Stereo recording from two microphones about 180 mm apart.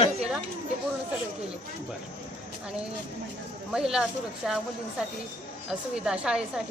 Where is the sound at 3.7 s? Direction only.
5° right (ahead or behind).